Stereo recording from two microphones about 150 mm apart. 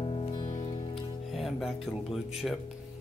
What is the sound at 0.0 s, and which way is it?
Music, 40° left (ahead or behind).